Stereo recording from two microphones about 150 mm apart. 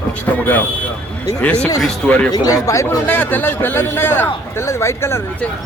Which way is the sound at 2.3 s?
25° left (ahead or behind).